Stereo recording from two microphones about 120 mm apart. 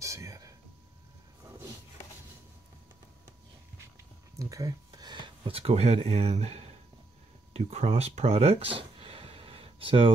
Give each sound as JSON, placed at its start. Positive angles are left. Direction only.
{"t": 0.0, "sound": "whispering", "side_deg": -25}
{"t": 4.4, "sound": "a sound", "side_deg": -30}
{"t": 5.6, "sound": "speech", "side_deg": -60}